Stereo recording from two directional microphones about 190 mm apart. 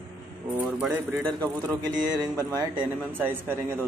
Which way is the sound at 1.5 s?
20° right (ahead or behind).